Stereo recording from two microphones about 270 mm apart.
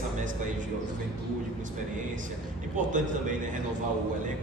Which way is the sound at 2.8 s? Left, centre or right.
Right.